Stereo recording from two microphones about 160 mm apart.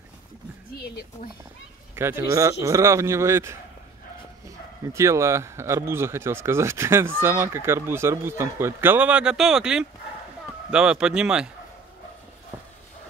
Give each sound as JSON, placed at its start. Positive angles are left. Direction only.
{"t": 2.0, "sound": "speech", "side_deg": -15}
{"t": 4.9, "sound": "speech", "side_deg": -20}